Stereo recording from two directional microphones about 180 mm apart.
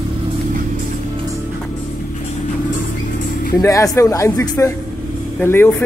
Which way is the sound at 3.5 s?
20° left (ahead or behind).